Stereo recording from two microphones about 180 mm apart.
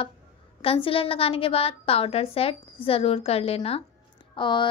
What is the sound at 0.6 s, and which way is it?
A woman's voice, 30° left (ahead or behind).